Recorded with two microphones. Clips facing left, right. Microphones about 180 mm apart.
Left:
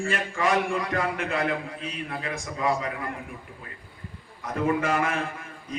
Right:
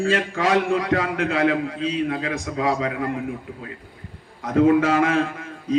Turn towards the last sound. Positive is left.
turn(degrees=-90)